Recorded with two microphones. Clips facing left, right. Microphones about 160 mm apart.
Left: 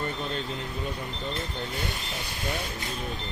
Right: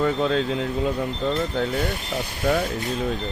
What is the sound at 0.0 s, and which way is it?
Speech, 90° right.